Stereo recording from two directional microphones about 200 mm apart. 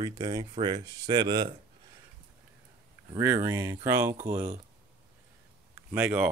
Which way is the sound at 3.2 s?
15° right (ahead or behind).